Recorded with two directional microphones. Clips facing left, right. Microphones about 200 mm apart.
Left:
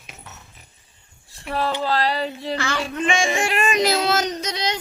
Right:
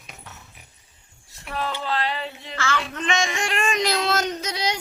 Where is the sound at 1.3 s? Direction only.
35° left (ahead or behind).